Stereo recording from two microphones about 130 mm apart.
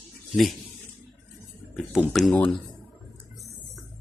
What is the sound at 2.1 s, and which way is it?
Speech, 5° left (ahead or behind).